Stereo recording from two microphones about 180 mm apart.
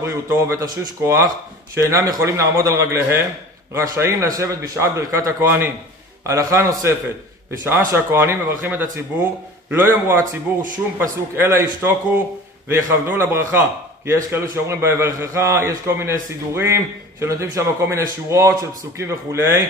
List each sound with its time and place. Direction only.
0.0 s a man's voice: 15° right (ahead or behind)